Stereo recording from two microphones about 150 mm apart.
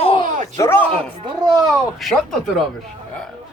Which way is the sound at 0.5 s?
15° left (ahead or behind).